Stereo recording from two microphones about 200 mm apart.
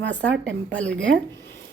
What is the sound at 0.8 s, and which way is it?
Speech, 5° left (ahead or behind).